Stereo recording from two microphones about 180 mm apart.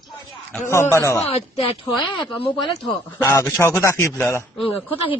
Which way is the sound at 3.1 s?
15° left (ahead or behind).